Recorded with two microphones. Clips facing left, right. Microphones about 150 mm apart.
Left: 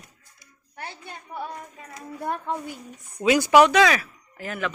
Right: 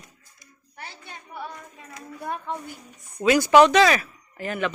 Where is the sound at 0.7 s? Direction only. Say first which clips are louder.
Left 4 dB; 50° left (ahead or behind).